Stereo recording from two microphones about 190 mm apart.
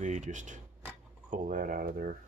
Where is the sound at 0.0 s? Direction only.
40° right (ahead or behind).